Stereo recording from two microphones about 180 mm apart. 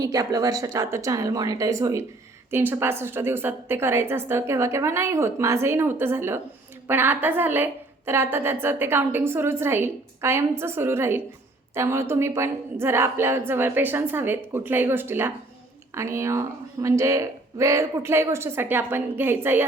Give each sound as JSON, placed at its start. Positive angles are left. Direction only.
{"t": 0.0, "sound": "a woman's voice", "side_deg": -20}